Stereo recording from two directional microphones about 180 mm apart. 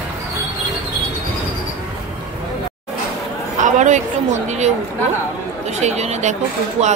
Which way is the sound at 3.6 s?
40° right (ahead or behind).